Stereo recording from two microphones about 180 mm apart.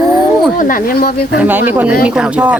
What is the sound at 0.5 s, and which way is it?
Speech, 50° left (ahead or behind).